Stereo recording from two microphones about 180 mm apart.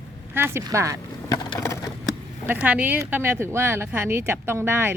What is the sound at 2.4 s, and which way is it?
Speech, 5° right (ahead or behind).